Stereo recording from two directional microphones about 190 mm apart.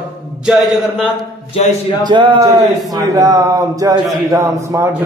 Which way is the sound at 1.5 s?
30° left (ahead or behind).